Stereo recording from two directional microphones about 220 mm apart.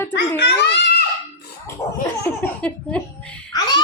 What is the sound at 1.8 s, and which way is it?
Speech, 15° left (ahead or behind).